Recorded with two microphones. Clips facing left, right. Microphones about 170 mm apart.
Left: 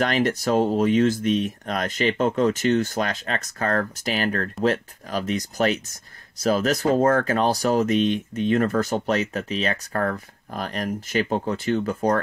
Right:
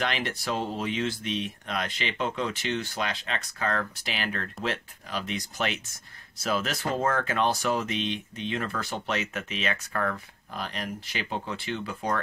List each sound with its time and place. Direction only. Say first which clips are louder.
0.0 s speech: left 9 dB; 45° left (ahead or behind)